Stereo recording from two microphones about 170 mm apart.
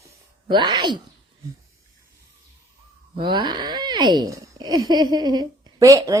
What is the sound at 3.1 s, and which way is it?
Speech, 25° right (ahead or behind).